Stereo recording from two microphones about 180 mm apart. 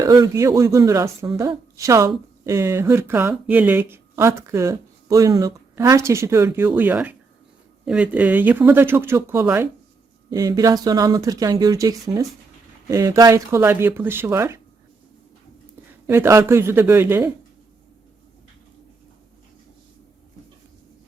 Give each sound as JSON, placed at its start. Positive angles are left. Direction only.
{"t": 0.0, "sound": "speech", "side_deg": -20}
{"t": 16.0, "sound": "speech", "side_deg": -15}